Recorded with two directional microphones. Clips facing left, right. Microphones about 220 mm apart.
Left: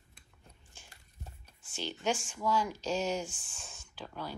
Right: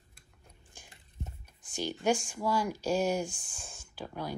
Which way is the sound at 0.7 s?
15° right (ahead or behind).